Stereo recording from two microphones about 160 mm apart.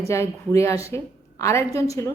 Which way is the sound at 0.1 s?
15° left (ahead or behind).